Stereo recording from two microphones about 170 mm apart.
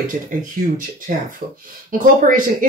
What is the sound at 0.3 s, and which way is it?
Speech, 50° right (ahead or behind).